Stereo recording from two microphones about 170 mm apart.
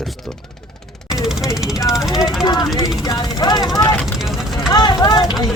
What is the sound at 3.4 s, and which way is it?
Speech, 25° left (ahead or behind).